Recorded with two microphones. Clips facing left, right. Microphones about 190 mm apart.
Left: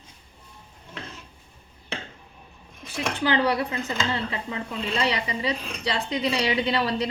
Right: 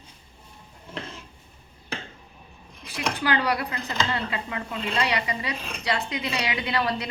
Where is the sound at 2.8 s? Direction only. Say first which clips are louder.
Left 1 dB; 25° left (ahead or behind).